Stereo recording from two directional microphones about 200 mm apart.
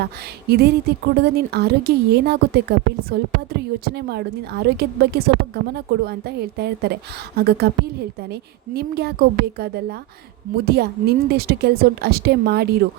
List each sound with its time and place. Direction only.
0.0 s a woman's voice: 50° right (ahead or behind)